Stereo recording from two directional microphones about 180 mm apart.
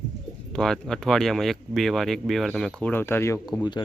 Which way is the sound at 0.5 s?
Centre (ahead or behind).